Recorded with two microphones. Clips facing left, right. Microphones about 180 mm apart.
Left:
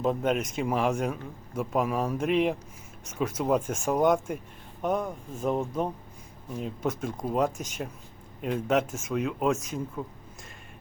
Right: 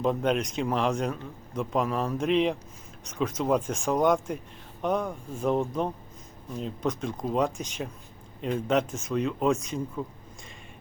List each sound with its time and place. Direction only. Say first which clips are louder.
0.0 s speech: right 1 dB; 5° left (ahead or behind)